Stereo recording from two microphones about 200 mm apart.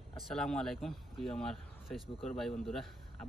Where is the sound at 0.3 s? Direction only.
5° left (ahead or behind).